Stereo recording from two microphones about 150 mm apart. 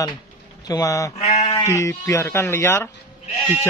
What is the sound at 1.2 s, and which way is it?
Sheep, 45° left (ahead or behind).